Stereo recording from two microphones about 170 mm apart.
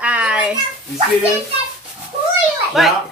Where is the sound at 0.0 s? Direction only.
5° right (ahead or behind).